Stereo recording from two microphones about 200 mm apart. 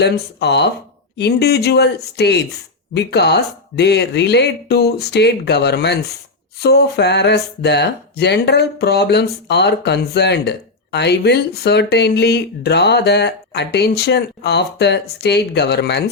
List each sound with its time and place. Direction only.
0.0 s speech: 55° left (ahead or behind)